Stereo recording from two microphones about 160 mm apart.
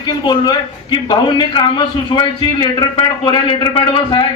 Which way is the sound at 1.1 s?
30° left (ahead or behind).